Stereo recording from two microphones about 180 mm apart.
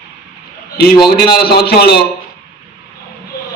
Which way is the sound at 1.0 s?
60° left (ahead or behind).